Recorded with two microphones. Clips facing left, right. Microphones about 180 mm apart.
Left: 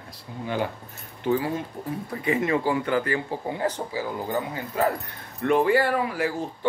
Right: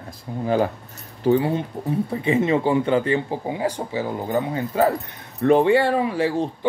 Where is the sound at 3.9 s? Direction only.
25° right (ahead or behind).